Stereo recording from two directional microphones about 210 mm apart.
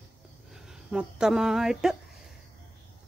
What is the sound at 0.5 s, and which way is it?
Speech, 5° right (ahead or behind).